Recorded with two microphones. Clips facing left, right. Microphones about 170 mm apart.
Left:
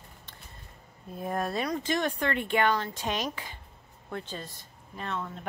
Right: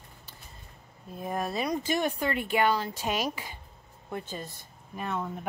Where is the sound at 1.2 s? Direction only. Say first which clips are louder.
Even; centre (ahead or behind).